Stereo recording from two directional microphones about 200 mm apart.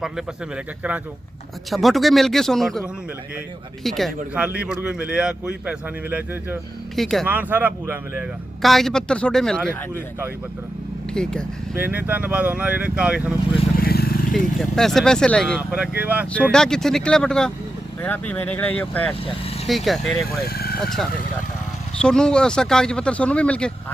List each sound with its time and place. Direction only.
0.0 s speech: 5° right (ahead or behind)
3.8 s speech: centre (ahead or behind)
8.6 s speech: centre (ahead or behind)
11.1 s speech: 5° left (ahead or behind)
11.7 s speech: 10° right (ahead or behind)
13.7 s vehicle: 50° left (ahead or behind)
14.3 s speech: centre (ahead or behind)
16.5 s speech: 5° left (ahead or behind)
20.5 s vehicle: 50° left (ahead or behind)
22.0 s speech: 5° left (ahead or behind)